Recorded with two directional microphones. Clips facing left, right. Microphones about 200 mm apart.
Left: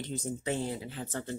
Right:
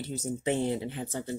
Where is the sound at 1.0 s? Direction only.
10° right (ahead or behind).